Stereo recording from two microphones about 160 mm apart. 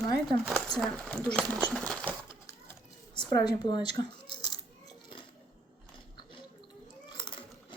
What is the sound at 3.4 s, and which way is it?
Speech, 25° left (ahead or behind).